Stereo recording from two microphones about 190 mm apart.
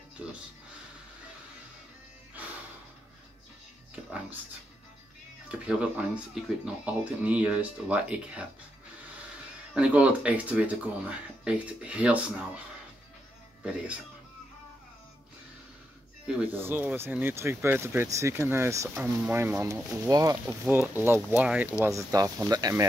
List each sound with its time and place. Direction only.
3.9 s speech: 10° right (ahead or behind)
5.5 s speech: 5° right (ahead or behind)
9.8 s speech: 5° right (ahead or behind)
16.3 s speech: 5° right (ahead or behind)